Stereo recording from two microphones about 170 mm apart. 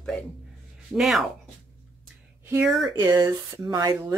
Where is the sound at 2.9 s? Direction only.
15° right (ahead or behind).